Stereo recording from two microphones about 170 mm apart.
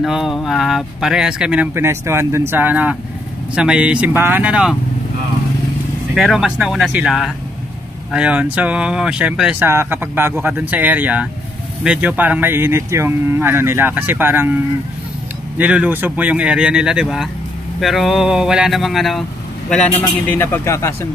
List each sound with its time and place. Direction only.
0.0 s speech: centre (ahead or behind)
6.1 s speech: centre (ahead or behind)
20.2 s speech: 15° left (ahead or behind)